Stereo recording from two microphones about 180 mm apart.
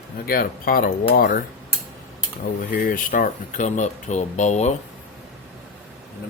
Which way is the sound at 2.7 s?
50° left (ahead or behind).